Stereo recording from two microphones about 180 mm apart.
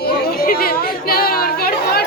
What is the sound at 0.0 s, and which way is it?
Chatter, 55° left (ahead or behind).